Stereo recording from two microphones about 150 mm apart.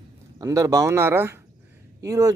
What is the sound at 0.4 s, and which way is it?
Speech, 20° right (ahead or behind).